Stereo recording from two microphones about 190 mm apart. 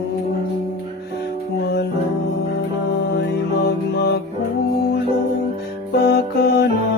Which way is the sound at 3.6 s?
60° left (ahead or behind).